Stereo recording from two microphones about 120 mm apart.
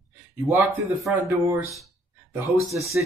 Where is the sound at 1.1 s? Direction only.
15° right (ahead or behind).